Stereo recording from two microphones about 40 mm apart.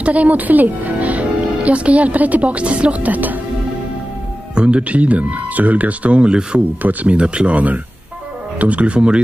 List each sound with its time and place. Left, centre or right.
0.0 s speech: right
4.6 s speech: right
6.8 s speech: right
7.2 s speech: right